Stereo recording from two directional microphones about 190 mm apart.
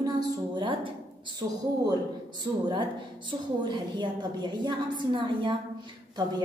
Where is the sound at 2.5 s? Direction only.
20° right (ahead or behind).